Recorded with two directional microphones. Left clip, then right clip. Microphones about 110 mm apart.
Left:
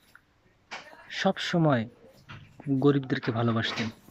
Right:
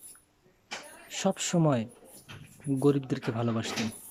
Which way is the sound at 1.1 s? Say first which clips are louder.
Left 3 dB; 25° right (ahead or behind).